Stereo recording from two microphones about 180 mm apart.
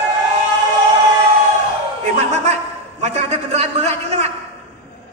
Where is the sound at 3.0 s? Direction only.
40° right (ahead or behind).